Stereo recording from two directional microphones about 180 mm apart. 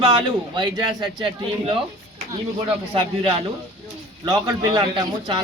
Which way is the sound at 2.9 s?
30° right (ahead or behind).